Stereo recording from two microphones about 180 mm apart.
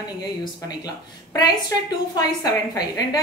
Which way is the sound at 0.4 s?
20° left (ahead or behind).